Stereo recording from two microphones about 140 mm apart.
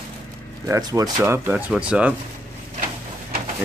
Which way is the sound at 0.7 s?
25° right (ahead or behind).